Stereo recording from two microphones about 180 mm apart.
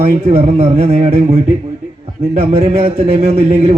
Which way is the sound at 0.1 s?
50° right (ahead or behind).